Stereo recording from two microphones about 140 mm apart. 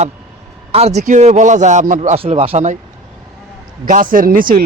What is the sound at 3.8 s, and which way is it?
Speech, 75° right (ahead or behind).